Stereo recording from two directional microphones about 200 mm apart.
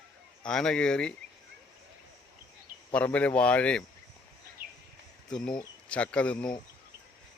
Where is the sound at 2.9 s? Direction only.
5° left (ahead or behind).